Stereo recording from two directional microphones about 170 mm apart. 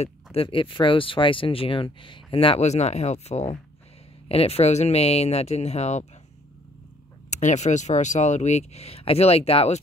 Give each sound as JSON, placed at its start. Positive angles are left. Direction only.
{"t": 0.0, "sound": "speech", "side_deg": 35}
{"t": 7.2, "sound": "speech", "side_deg": 45}